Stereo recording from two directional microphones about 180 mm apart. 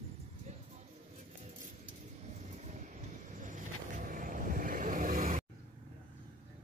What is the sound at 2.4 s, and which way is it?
Vehicle, 40° right (ahead or behind).